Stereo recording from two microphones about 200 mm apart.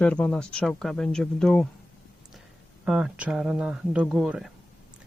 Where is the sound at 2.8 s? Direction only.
5° right (ahead or behind).